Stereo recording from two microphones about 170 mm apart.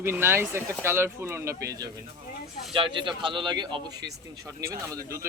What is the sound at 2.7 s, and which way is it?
A man's voice, 30° right (ahead or behind).